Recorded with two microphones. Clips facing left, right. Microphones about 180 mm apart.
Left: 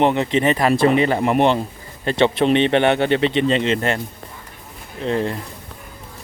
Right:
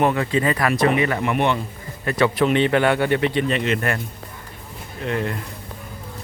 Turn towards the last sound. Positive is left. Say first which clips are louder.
# left 3 dB
turn(degrees=30)  # may be behind; listen again after turning